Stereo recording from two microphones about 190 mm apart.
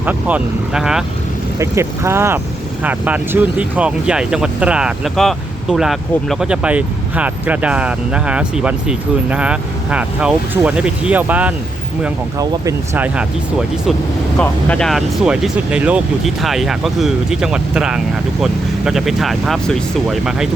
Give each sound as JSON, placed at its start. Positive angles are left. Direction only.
{"t": 0.0, "sound": "speech", "side_deg": -10}
{"t": 1.5, "sound": "speech", "side_deg": -15}
{"t": 14.3, "sound": "speech", "side_deg": 5}